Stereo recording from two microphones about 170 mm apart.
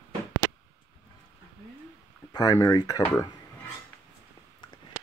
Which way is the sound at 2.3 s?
20° left (ahead or behind).